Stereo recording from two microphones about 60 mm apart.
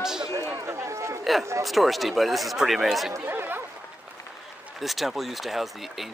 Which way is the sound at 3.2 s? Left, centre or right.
Right.